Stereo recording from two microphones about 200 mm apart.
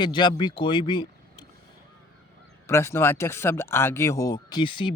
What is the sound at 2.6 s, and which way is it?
Speech, 15° left (ahead or behind).